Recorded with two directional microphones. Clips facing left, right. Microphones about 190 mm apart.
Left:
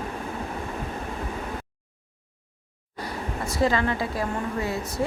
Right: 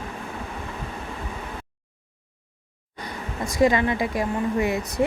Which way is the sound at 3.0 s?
15° right (ahead or behind).